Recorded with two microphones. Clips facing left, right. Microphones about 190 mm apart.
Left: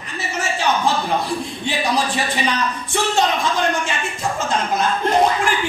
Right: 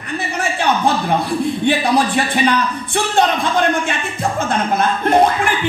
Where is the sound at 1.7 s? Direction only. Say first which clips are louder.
Right 4 dB; 60° right (ahead or behind).